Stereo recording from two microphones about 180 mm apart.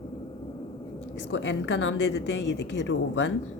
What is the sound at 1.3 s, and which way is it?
A woman's voice, 90° left.